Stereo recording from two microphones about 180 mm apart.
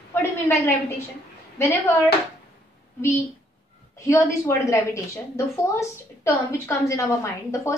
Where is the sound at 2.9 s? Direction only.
15° left (ahead or behind).